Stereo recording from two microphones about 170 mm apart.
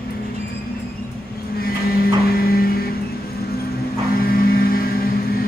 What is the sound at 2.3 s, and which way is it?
Vehicle, 65° left (ahead or behind).